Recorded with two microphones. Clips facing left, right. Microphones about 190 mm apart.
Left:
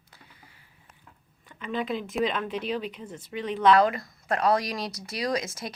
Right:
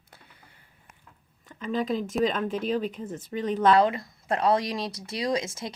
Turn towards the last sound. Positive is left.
turn(degrees=-25)  # may be behind; listen again after turning